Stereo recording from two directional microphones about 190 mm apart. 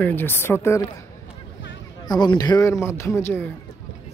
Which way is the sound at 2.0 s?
20° left (ahead or behind).